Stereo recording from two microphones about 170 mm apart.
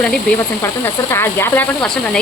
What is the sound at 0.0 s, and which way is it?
Speech, 5° left (ahead or behind).